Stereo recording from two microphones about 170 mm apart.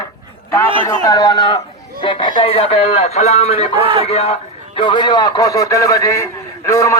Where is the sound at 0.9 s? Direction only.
20° left (ahead or behind).